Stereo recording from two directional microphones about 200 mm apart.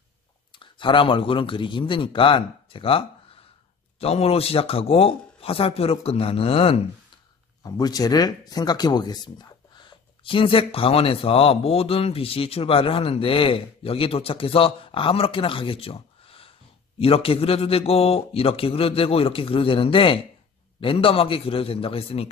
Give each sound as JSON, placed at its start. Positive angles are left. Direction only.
{"t": 0.5, "sound": "speech", "side_deg": 25}
{"t": 7.6, "sound": "speech", "side_deg": 20}